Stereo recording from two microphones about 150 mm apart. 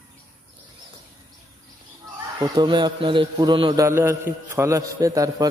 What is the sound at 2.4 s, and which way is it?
Speech, 30° right (ahead or behind).